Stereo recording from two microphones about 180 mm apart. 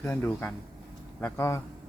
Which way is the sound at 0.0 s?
10° left (ahead or behind).